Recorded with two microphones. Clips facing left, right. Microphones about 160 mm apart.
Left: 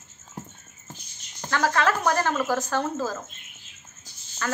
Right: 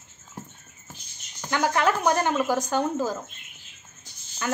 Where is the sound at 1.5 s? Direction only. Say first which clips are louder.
Even; 15° right (ahead or behind).